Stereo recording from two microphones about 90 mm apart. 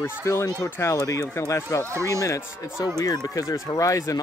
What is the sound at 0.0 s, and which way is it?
Speech, 30° left (ahead or behind).